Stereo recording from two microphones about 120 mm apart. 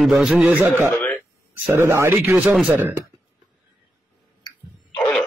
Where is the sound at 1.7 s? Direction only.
25° right (ahead or behind).